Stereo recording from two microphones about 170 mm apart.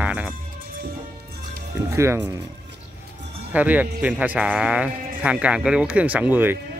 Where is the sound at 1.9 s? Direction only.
15° right (ahead or behind).